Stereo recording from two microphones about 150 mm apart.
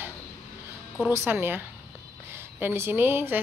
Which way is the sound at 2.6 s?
15° right (ahead or behind).